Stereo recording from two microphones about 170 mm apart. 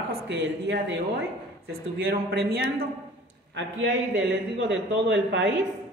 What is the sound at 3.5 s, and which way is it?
A woman's voice, 90° right.